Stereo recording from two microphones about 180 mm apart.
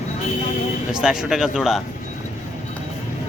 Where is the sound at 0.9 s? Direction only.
5° right (ahead or behind).